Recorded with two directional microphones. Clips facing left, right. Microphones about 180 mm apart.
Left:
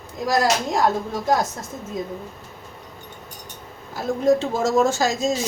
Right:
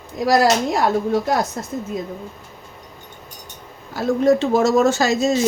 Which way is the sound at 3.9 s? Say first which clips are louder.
Right 3 dB; 70° right (ahead or behind).